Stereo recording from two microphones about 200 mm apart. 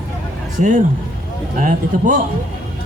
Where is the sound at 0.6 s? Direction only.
40° right (ahead or behind).